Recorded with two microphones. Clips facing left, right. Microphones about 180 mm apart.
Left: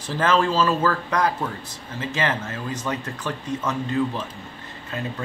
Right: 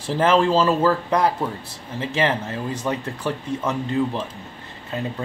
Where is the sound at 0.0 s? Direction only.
30° right (ahead or behind).